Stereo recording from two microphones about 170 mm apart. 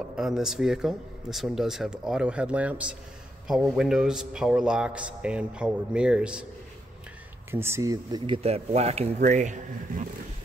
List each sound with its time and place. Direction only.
0.1 s a man's voice: 5° right (ahead or behind)
7.5 s speech: 15° right (ahead or behind)
8.4 s speech: 40° right (ahead or behind)